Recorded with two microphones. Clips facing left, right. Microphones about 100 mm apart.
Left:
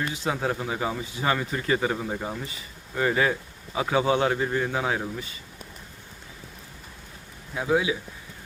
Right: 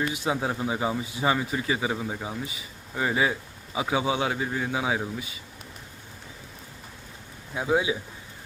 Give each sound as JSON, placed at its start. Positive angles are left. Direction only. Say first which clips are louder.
{"t": 0.1, "sound": "speech", "louder": "even", "side_deg": -15}
{"t": 7.5, "sound": "speech", "louder": "left 1 dB", "side_deg": -20}